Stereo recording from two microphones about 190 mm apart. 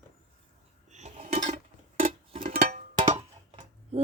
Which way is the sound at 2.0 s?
45° right (ahead or behind).